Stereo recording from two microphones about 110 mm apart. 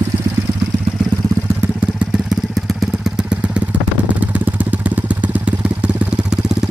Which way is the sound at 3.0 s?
10° right (ahead or behind).